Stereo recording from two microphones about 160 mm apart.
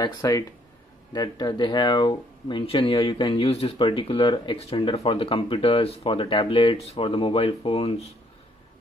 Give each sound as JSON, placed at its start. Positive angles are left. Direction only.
{"t": 0.0, "sound": "speech", "side_deg": 20}